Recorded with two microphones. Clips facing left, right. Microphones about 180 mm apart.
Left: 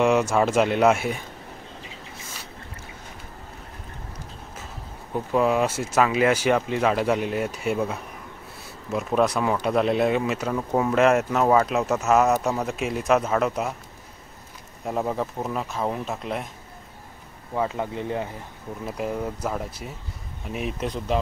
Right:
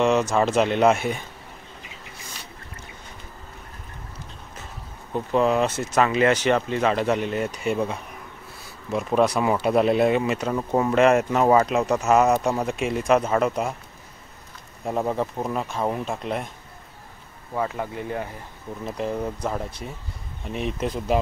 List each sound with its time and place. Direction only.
0.0 s speech: 10° left (ahead or behind)
5.1 s speech: 5° left (ahead or behind)
14.9 s speech: centre (ahead or behind)
17.6 s speech: 20° left (ahead or behind)
18.9 s speech: 10° left (ahead or behind)